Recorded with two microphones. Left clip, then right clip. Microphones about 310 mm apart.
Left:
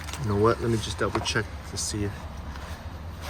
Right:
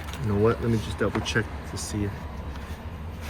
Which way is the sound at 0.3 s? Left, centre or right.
Left.